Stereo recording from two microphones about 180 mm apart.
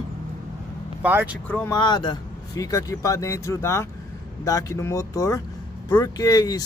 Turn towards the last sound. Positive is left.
turn(degrees=20)  # may be behind; listen again after turning